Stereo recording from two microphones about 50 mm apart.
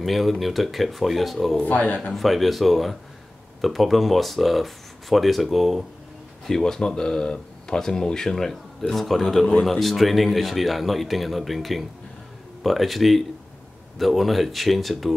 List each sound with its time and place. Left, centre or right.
0.0 s speech: centre
1.6 s a man's voice: left
2.1 s speech: centre
6.4 s speech: centre